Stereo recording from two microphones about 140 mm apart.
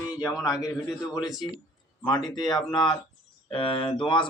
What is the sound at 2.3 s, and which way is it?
Speech, 30° left (ahead or behind).